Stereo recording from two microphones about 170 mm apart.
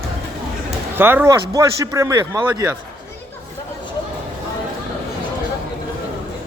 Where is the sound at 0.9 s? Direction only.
10° right (ahead or behind).